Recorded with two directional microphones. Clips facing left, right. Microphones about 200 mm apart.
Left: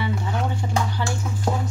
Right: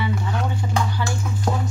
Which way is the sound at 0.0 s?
25° left (ahead or behind).